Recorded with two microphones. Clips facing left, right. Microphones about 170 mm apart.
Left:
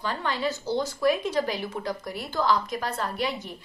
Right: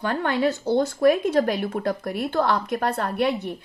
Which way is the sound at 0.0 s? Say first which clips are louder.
Right 6 dB; 55° right (ahead or behind).